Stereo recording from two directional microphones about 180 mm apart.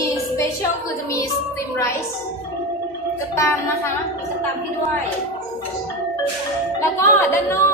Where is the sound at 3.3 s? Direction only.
15° left (ahead or behind).